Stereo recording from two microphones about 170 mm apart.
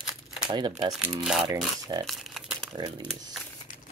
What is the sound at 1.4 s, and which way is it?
Speech, 25° right (ahead or behind).